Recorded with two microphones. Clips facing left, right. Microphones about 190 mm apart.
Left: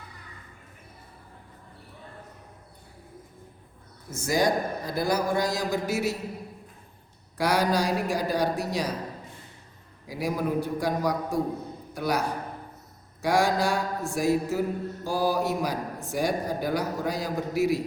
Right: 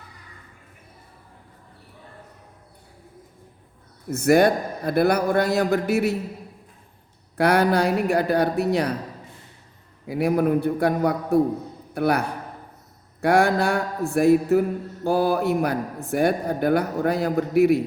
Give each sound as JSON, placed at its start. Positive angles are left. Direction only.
{"t": 4.1, "sound": "a man's voice", "side_deg": -60}
{"t": 7.3, "sound": "a man's voice", "side_deg": -60}
{"t": 10.1, "sound": "a man's voice", "side_deg": -60}